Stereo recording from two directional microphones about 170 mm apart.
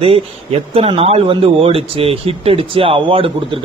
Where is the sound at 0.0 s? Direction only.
35° right (ahead or behind).